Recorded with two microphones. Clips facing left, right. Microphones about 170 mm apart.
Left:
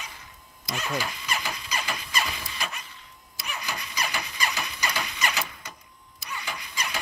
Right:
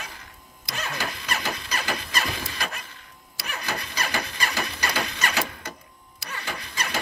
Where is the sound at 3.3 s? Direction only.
70° right (ahead or behind).